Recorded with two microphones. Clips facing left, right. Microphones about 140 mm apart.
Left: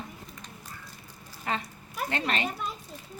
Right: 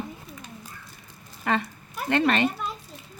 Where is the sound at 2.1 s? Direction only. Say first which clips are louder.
Right 9 dB; 70° right (ahead or behind).